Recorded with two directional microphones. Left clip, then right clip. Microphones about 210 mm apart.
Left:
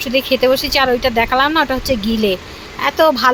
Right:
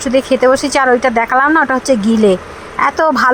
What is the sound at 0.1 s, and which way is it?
Speech, 45° right (ahead or behind).